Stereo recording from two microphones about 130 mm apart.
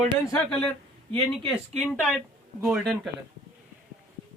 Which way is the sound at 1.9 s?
Centre (ahead or behind).